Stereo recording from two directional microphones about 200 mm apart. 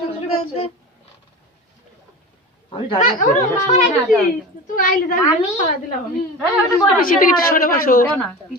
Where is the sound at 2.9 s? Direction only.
40° left (ahead or behind).